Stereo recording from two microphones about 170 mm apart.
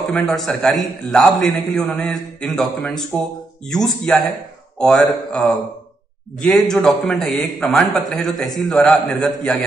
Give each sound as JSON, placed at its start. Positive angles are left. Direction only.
{"t": 0.1, "sound": "a man's voice", "side_deg": 5}